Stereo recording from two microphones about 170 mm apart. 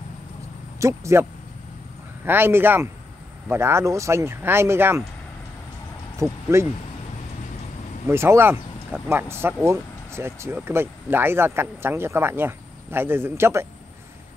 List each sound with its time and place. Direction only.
0.7 s speech: 15° right (ahead or behind)
2.2 s speech: 15° right (ahead or behind)
6.1 s speech: 15° right (ahead or behind)
8.1 s speech: 15° right (ahead or behind)